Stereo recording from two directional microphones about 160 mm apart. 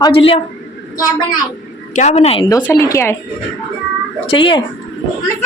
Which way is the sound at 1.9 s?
45° left (ahead or behind).